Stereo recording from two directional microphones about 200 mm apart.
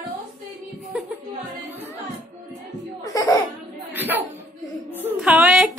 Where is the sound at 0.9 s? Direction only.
5° right (ahead or behind).